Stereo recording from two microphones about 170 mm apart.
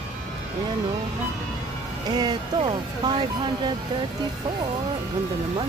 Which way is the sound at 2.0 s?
25° right (ahead or behind).